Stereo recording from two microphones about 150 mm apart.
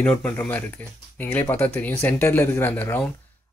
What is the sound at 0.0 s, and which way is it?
Speech, 10° left (ahead or behind).